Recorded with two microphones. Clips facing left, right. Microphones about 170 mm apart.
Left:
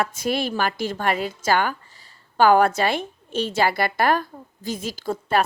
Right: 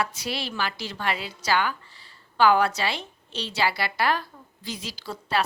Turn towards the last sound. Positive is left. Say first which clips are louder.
# left 5 dB
turn(degrees=50)  # may be behind; listen again after turning